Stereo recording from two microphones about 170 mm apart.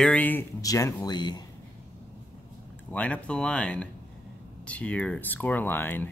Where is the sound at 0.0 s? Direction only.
10° left (ahead or behind); by 1.4 s 25° left (ahead or behind).